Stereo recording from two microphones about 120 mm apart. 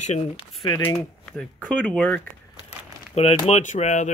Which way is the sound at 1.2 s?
10° left (ahead or behind).